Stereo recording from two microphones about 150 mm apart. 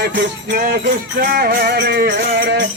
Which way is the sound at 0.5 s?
80° right.